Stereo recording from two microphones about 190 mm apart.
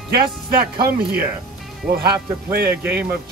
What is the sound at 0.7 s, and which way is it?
Speech, 50° right (ahead or behind).